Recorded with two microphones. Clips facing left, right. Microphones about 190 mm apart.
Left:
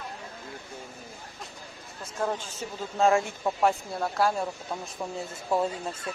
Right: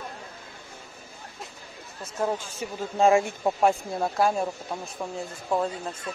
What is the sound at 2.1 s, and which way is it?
A woman's voice, 10° right (ahead or behind).